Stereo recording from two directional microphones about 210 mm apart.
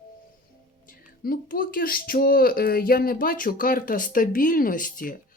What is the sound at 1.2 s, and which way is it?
Speech, 45° left (ahead or behind).